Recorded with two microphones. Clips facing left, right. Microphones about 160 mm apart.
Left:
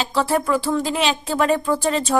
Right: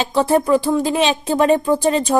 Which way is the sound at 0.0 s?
20° right (ahead or behind).